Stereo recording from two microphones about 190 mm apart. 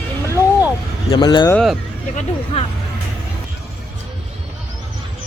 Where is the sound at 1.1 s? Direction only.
25° left (ahead or behind).